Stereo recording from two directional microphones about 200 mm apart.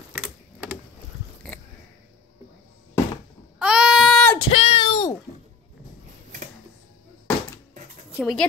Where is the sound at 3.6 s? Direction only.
5° right (ahead or behind).